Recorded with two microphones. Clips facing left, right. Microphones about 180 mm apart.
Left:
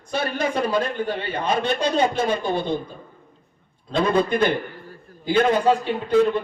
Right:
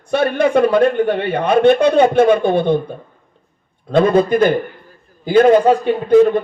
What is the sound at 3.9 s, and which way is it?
Speech, 50° right (ahead or behind).